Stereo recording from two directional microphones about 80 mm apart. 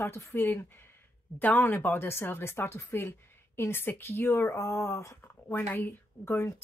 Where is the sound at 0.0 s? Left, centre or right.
Left.